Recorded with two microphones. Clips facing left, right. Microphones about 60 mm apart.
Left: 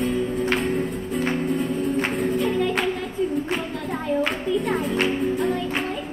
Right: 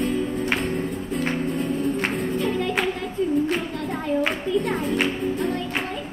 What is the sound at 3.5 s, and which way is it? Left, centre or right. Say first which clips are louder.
Child singing: even; centre.